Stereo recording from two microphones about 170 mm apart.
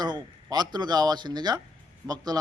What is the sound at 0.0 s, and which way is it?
A man's voice, 25° right (ahead or behind).